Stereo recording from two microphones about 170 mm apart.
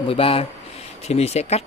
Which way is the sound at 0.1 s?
35° left (ahead or behind).